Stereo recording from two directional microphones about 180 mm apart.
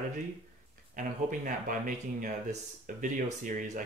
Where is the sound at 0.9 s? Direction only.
50° right (ahead or behind).